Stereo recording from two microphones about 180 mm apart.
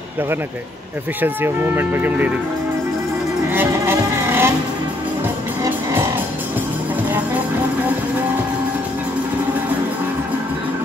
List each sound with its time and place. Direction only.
1.2 s speech: 10° right (ahead or behind)
3.4 s music: 10° right (ahead or behind)
5.6 s music: 20° right (ahead or behind)